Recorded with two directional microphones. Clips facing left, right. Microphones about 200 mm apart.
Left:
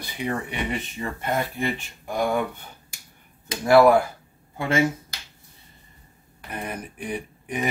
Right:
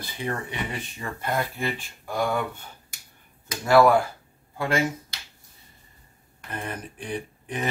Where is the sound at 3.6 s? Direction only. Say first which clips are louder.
Left 2 dB; 10° left (ahead or behind).